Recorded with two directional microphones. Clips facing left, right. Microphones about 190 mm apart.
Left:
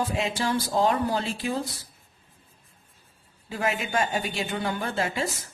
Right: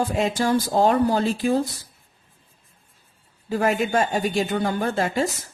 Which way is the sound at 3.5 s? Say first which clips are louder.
Right 7 dB; 40° right (ahead or behind).